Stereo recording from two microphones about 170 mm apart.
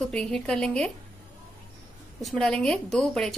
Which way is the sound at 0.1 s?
5° left (ahead or behind).